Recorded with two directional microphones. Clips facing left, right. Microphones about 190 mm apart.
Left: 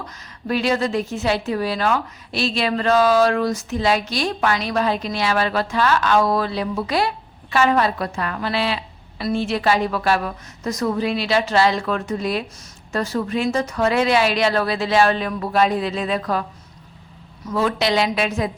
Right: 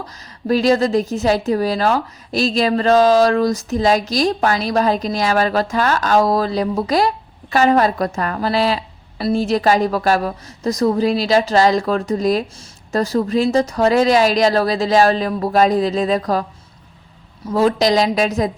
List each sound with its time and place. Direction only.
0.0 s a woman's voice: 40° right (ahead or behind)